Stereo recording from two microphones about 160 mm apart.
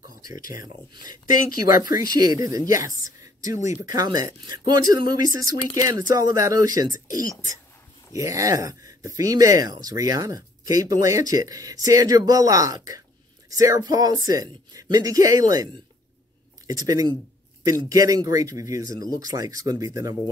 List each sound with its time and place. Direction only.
1.3 s speech: 60° left (ahead or behind)
2.0 s speech: 25° right (ahead or behind)